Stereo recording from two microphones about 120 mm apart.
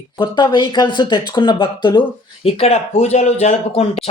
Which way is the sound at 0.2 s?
40° left (ahead or behind).